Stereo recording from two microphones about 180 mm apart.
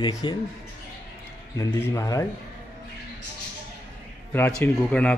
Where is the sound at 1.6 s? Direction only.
15° left (ahead or behind).